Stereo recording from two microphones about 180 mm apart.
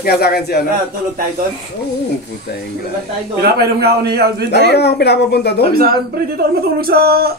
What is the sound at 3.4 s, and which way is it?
Speech, 60° right (ahead or behind).